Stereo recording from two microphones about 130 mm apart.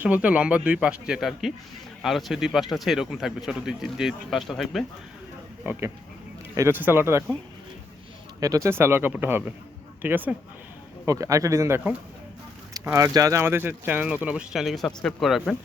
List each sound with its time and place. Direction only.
0.0 s speech: 10° right (ahead or behind)
6.6 s speech: 15° right (ahead or behind)
8.4 s speech: 25° right (ahead or behind)
11.0 s speech: 25° right (ahead or behind)
12.8 s speech: 20° right (ahead or behind); by 15.5 s centre (ahead or behind)